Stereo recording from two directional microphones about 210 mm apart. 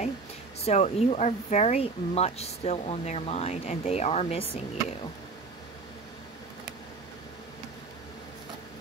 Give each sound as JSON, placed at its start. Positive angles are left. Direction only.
{"t": 0.7, "sound": "speech", "side_deg": 30}